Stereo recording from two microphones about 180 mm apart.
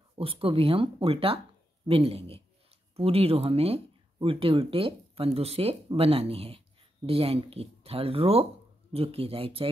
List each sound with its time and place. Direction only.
0.1 s speech: 30° right (ahead or behind)